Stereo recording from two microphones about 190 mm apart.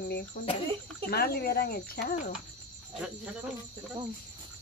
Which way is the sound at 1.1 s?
55° left (ahead or behind).